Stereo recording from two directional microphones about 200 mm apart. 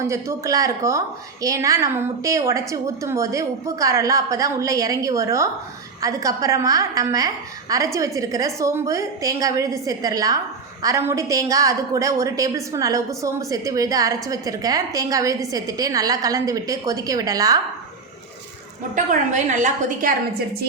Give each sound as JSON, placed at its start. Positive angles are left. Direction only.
{"t": 0.0, "sound": "a woman's voice", "side_deg": -15}
{"t": 18.9, "sound": "a woman's voice", "side_deg": -40}